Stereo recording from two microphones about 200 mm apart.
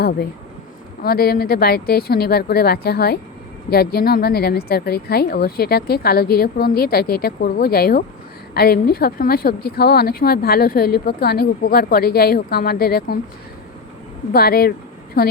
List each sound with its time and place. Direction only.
1.0 s speech: 50° left (ahead or behind)
14.3 s speech: 50° left (ahead or behind)